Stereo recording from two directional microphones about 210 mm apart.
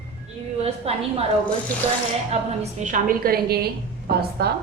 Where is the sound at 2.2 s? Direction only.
35° right (ahead or behind); by 4.5 s 50° right (ahead or behind).